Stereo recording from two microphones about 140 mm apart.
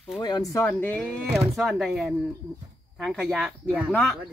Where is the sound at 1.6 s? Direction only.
Centre (ahead or behind).